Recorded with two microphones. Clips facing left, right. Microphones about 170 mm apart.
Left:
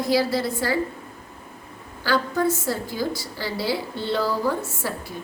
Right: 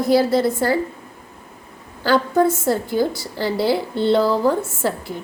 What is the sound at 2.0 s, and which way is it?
A woman's voice, 55° right (ahead or behind).